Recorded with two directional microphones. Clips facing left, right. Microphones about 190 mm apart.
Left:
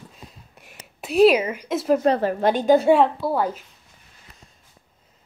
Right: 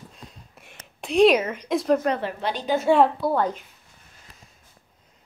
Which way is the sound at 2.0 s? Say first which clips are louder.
Left 6 dB; 40° left (ahead or behind).